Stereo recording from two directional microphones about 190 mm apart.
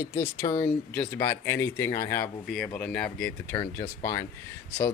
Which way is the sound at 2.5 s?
5° left (ahead or behind).